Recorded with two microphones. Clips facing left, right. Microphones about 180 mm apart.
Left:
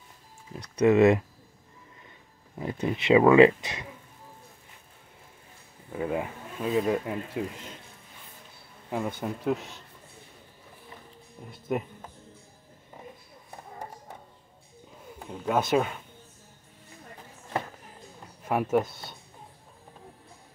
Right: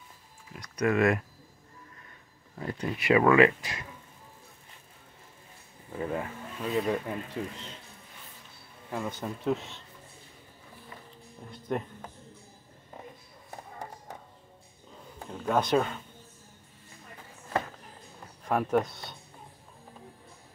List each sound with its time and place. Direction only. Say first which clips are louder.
0.5 s speech: left 6 dB; 30° left (ahead or behind)
2.6 s speech: left 4 dB; 25° left (ahead or behind)
5.9 s speech: left 3 dB; 15° left (ahead or behind)
8.9 s speech: left 3 dB; 15° left (ahead or behind)
9.4 s speech: even; centre (ahead or behind)
11.5 s speech: left 2 dB; 5° left (ahead or behind)
15.1 s speech: left 1 dB; 5° left (ahead or behind)
18.4 s speech: left 1 dB; 5° left (ahead or behind)